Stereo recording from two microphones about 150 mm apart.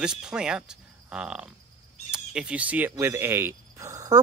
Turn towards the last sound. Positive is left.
turn(degrees=-25)  # may be behind; listen again after turning